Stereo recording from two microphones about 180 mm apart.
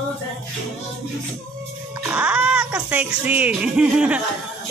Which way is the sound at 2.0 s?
10° right (ahead or behind).